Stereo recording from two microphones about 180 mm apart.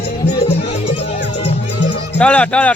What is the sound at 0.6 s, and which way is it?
Music, 35° left (ahead or behind).